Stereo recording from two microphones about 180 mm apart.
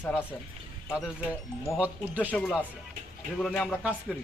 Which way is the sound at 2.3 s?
5° left (ahead or behind).